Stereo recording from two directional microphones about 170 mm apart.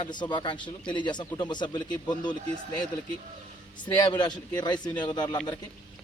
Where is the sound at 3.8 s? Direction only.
25° left (ahead or behind).